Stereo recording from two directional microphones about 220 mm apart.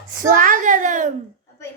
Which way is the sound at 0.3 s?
40° right (ahead or behind).